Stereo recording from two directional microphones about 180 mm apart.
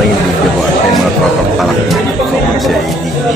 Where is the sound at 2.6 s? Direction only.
Centre (ahead or behind).